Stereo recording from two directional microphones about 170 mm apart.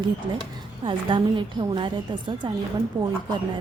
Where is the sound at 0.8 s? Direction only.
30° right (ahead or behind).